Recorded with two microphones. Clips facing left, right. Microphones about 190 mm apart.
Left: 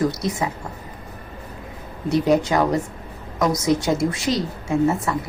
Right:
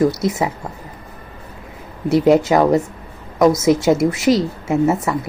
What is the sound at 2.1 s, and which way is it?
Speech, 20° right (ahead or behind).